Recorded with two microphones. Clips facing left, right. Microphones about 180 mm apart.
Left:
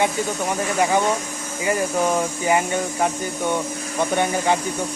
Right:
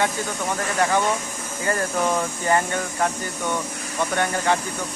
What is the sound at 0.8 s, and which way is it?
Speech, 15° left (ahead or behind).